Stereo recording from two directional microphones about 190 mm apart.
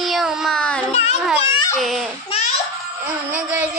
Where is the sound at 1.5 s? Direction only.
20° left (ahead or behind).